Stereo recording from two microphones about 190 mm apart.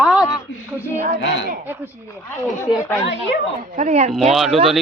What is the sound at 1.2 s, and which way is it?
Speech, 70° left (ahead or behind).